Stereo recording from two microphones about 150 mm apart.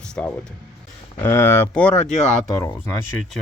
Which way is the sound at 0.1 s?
10° left (ahead or behind).